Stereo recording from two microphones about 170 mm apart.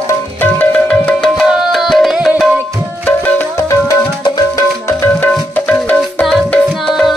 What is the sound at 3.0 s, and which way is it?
Tabla, 10° left (ahead or behind).